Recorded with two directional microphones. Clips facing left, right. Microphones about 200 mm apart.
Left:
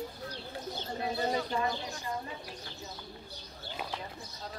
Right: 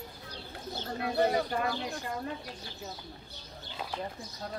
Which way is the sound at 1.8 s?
60° right (ahead or behind).